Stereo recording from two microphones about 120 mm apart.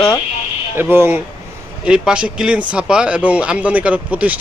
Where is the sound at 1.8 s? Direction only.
10° right (ahead or behind).